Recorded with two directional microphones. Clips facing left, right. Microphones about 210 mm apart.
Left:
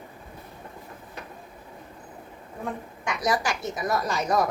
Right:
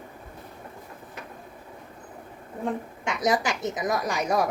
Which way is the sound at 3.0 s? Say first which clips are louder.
Right 1 dB; 25° right (ahead or behind).